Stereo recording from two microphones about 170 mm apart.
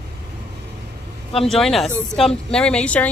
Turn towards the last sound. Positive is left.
turn(degrees=5)  # may be behind; listen again after turning